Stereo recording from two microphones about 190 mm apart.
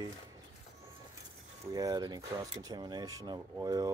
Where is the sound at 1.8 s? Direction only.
20° right (ahead or behind).